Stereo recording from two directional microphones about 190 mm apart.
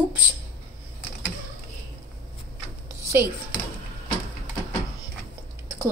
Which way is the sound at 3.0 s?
10° right (ahead or behind).